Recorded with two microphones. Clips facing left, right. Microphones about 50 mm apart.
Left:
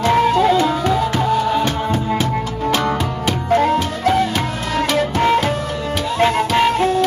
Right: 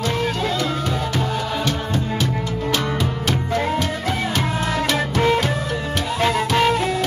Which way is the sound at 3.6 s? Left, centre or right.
Left.